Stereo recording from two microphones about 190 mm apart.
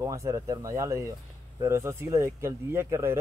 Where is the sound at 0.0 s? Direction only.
15° right (ahead or behind).